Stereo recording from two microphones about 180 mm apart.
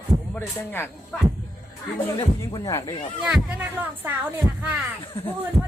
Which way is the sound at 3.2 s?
5° right (ahead or behind).